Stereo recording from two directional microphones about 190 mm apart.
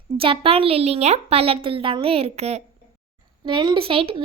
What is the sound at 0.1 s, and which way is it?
A woman's voice, 30° right (ahead or behind).